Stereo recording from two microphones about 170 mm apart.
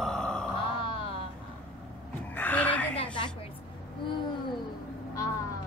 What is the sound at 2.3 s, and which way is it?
Music, 10° left (ahead or behind).